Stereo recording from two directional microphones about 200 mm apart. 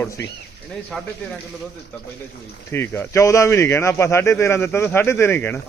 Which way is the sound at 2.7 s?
10° left (ahead or behind).